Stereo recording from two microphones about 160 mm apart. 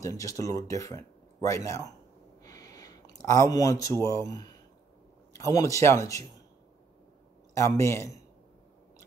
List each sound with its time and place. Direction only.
0.0 s speech: 20° left (ahead or behind)
2.4 s a sound: 20° left (ahead or behind)
3.2 s speech: 20° left (ahead or behind)
7.5 s speech: 20° left (ahead or behind)